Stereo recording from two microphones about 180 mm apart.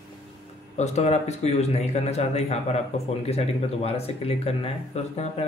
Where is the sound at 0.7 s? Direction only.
40° left (ahead or behind).